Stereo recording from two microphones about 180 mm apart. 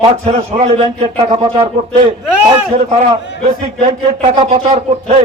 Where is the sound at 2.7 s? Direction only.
35° right (ahead or behind).